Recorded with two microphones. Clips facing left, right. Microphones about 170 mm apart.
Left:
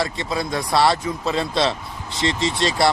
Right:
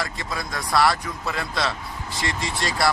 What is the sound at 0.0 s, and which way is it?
Speech, 25° left (ahead or behind).